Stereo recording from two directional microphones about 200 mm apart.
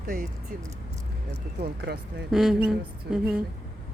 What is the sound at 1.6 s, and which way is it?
Speech, 55° right (ahead or behind).